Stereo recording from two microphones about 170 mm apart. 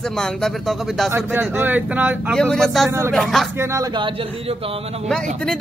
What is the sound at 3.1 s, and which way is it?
Speech, centre (ahead or behind).